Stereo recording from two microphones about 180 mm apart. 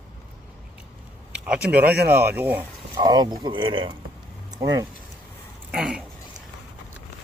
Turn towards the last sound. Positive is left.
turn(degrees=-5)  # may be behind; listen again after turning